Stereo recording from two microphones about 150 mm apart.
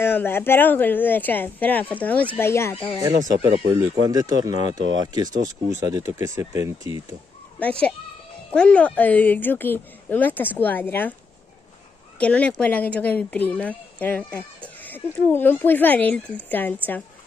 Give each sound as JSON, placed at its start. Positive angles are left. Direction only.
{"t": 0.0, "sound": "a woman's voice", "side_deg": 15}
{"t": 3.4, "sound": "speech", "side_deg": -25}
{"t": 7.5, "sound": "a woman's voice", "side_deg": 10}
{"t": 12.2, "sound": "a woman's voice", "side_deg": 10}